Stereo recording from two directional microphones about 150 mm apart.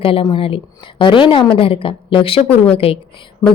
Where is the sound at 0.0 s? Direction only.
35° left (ahead or behind).